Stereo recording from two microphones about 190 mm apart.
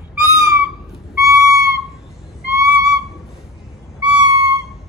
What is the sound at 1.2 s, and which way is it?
Whistle, 15° right (ahead or behind).